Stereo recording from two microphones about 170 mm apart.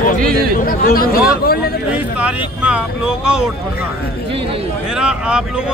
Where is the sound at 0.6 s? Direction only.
60° left (ahead or behind).